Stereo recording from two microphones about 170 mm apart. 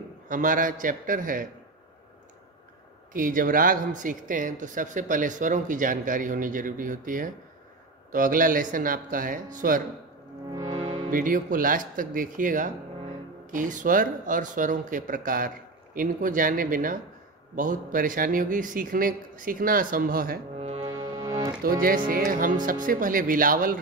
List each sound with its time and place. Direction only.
0.3 s speech: 50° right (ahead or behind)
3.1 s speech: 55° right (ahead or behind)
10.5 s music: 20° right (ahead or behind)
11.1 s speech: 55° right (ahead or behind)
20.6 s music: 40° right (ahead or behind)
21.6 s speech: 55° right (ahead or behind)